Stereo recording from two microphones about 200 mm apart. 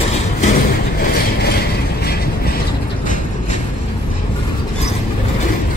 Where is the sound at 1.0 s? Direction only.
50° left (ahead or behind).